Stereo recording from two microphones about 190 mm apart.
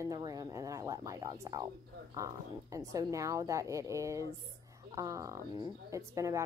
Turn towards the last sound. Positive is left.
turn(degrees=-15)  # may be behind; listen again after turning